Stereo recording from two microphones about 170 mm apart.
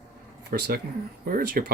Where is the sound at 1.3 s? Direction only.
60° right (ahead or behind).